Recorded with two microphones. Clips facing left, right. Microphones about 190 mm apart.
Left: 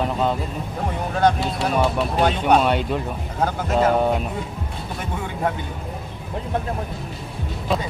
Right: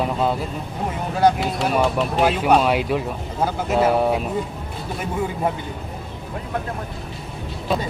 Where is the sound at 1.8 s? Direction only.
Centre (ahead or behind).